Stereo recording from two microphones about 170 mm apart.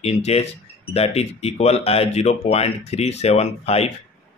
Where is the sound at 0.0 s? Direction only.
35° left (ahead or behind).